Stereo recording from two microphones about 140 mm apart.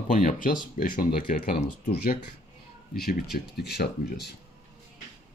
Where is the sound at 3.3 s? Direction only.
90° left.